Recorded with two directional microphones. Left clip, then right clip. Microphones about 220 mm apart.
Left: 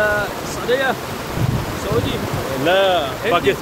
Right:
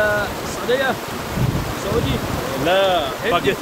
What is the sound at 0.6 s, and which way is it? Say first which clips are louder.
Speech: left 1 dB; centre (ahead or behind).